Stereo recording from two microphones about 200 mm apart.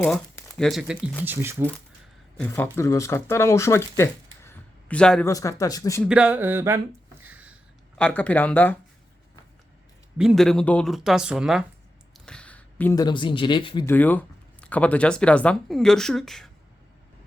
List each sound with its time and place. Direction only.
0.0 s a sound: 10° left (ahead or behind)
0.6 s speech: centre (ahead or behind)
1.2 s a sound: 10° right (ahead or behind)
2.5 s speech: 15° left (ahead or behind)
5.3 s speech: 15° left (ahead or behind)
6.1 s a sound: 5° right (ahead or behind)
7.9 s speech: 5° left (ahead or behind)
10.2 s speech: centre (ahead or behind); by 13.8 s 25° left (ahead or behind)
13.8 s speech: 10° left (ahead or behind)